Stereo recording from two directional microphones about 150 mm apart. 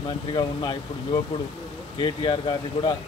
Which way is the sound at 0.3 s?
35° left (ahead or behind).